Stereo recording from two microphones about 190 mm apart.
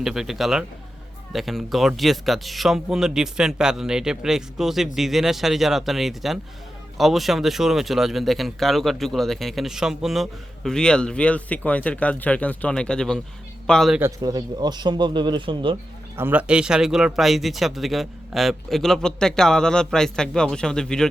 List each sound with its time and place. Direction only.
0.0 s speech: centre (ahead or behind)
14.0 s a man's voice: 20° right (ahead or behind)
16.1 s speech: 10° right (ahead or behind)